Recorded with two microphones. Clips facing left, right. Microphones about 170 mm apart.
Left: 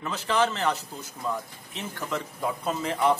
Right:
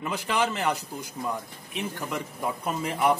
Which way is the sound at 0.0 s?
15° right (ahead or behind).